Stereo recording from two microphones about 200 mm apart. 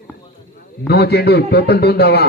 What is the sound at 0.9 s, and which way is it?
A man's voice, 55° left (ahead or behind).